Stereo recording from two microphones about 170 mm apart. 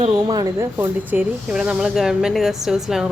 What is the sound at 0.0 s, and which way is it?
Speech, 25° right (ahead or behind).